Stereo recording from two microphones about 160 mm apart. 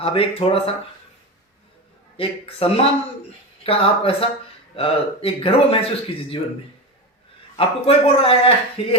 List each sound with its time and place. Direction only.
0.0 s speech: 35° left (ahead or behind)
2.1 s speech: 35° left (ahead or behind)
7.5 s speech: 35° left (ahead or behind)